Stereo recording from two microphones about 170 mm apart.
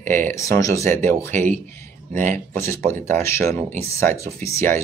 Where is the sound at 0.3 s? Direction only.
20° left (ahead or behind).